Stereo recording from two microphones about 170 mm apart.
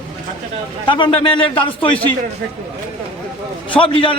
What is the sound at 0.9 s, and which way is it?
Speech, 30° left (ahead or behind).